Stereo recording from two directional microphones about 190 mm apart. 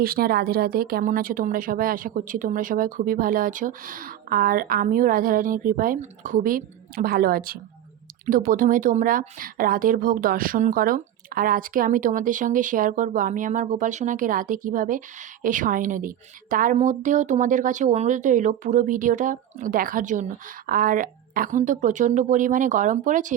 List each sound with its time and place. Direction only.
0.0 s a woman's voice: 50° right (ahead or behind)